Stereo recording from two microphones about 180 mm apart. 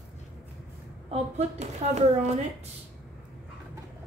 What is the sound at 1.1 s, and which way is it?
Speech, 35° right (ahead or behind).